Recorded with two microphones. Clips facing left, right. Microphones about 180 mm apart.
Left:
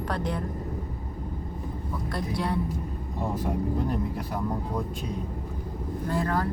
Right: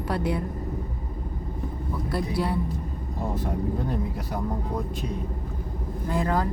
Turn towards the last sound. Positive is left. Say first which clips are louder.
# right 2 dB
turn(degrees=-15)  # may be behind; listen again after turning